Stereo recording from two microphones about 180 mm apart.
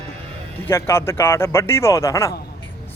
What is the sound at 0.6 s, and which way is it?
Speech, 15° left (ahead or behind).